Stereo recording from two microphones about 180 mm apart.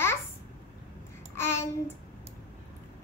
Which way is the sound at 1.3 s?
15° left (ahead or behind).